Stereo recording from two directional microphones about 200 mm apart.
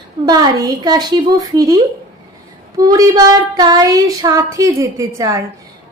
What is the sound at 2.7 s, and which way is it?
Child singing, 20° right (ahead or behind).